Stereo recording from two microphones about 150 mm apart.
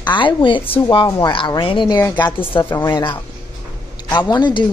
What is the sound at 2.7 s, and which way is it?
Speech, 15° left (ahead or behind).